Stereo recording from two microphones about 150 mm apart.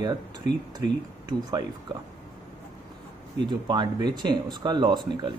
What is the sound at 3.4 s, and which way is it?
Speech, 30° right (ahead or behind).